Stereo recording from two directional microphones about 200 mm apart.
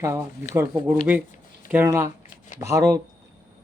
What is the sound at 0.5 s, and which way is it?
Speech, 10° right (ahead or behind).